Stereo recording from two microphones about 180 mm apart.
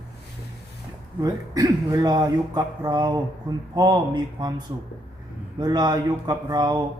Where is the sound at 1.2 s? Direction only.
20° right (ahead or behind).